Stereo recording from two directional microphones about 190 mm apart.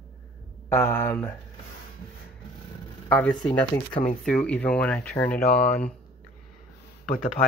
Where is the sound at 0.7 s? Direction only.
10° left (ahead or behind).